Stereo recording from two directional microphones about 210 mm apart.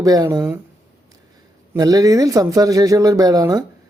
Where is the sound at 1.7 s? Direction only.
15° right (ahead or behind).